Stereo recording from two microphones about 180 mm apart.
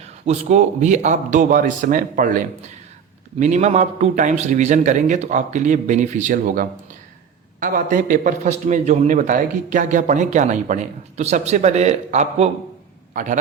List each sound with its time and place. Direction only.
0.0 s a man's voice: 40° right (ahead or behind)
3.4 s a man's voice: 40° right (ahead or behind)